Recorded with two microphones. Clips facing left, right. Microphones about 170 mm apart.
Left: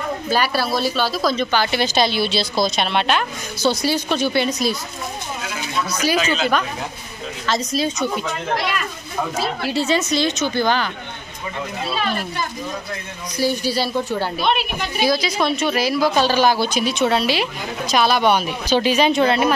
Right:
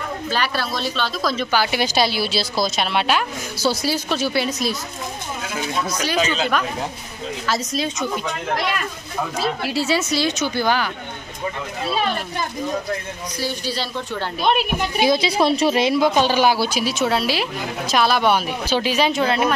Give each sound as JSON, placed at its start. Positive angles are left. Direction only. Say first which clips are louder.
{"t": 0.3, "sound": "a woman's voice", "louder": "left 4 dB", "side_deg": 10}
{"t": 1.3, "sound": "speech", "louder": "left 1 dB", "side_deg": -5}
{"t": 6.0, "sound": "speech", "louder": "left 3 dB", "side_deg": 5}
{"t": 9.6, "sound": "a woman's voice", "louder": "left 3 dB", "side_deg": -5}
{"t": 13.4, "sound": "a woman's voice", "louder": "left 6 dB", "side_deg": 10}
{"t": 14.4, "sound": "a woman's voice", "louder": "right 4 dB", "side_deg": -45}
{"t": 15.0, "sound": "speech", "louder": "right 1 dB", "side_deg": -25}